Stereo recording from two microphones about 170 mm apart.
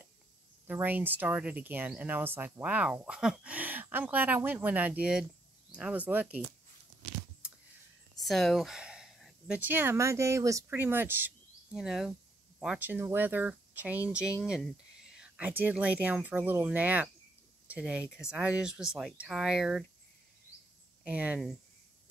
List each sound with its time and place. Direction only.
0.7 s speech: 10° right (ahead or behind)
8.2 s speech: centre (ahead or behind)
21.0 s speech: 5° right (ahead or behind)